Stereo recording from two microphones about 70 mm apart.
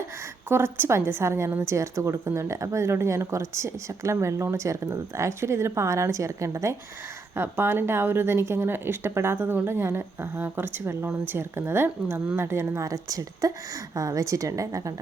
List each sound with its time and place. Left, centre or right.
0.4 s a woman's voice: right
7.3 s speech: right
12.8 s a woman's voice: right